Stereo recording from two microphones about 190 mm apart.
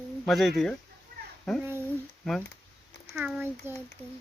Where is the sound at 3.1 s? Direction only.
5° right (ahead or behind).